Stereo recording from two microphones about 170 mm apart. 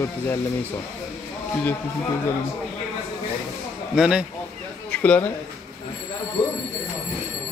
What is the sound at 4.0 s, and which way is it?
Speech, 5° right (ahead or behind).